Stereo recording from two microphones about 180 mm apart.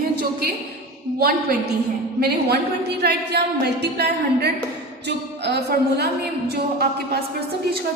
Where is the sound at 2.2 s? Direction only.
65° right (ahead or behind).